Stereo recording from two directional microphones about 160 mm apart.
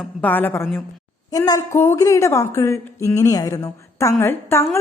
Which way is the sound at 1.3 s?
25° left (ahead or behind).